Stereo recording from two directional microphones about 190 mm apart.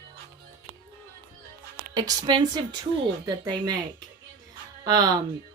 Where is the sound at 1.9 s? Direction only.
20° right (ahead or behind).